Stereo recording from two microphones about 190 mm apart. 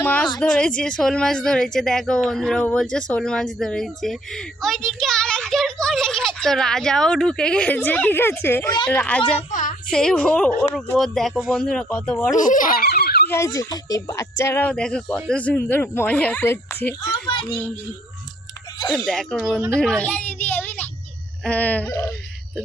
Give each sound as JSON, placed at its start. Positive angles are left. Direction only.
{"t": 0.0, "sound": "a sound", "side_deg": 10}
{"t": 0.3, "sound": "speech", "side_deg": 5}
{"t": 9.5, "sound": "a sound", "side_deg": 40}
{"t": 9.9, "sound": "speech", "side_deg": 5}
{"t": 12.3, "sound": "speech", "side_deg": 45}
{"t": 13.2, "sound": "speech", "side_deg": 15}
{"t": 19.0, "sound": "speech", "side_deg": 0}